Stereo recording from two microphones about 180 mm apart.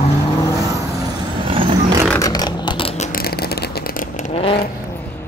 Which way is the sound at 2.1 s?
20° left (ahead or behind).